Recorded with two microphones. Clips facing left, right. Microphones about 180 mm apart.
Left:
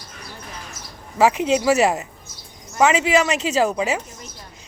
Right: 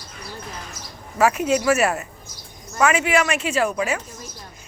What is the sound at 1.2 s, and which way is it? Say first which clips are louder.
Speech: left 1 dB; 20° left (ahead or behind).